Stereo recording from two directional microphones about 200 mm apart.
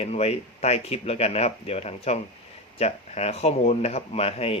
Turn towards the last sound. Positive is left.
turn(degrees=30)  # may be behind; listen again after turning